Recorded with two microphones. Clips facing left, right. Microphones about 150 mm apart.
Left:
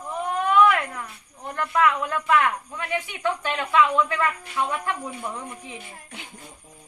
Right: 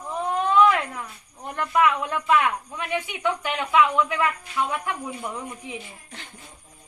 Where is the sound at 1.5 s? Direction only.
15° right (ahead or behind).